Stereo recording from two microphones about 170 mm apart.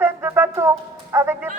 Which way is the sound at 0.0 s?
15° right (ahead or behind).